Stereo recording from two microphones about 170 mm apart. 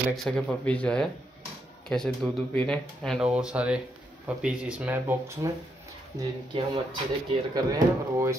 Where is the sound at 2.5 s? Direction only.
5° left (ahead or behind); by 5.5 s 15° right (ahead or behind).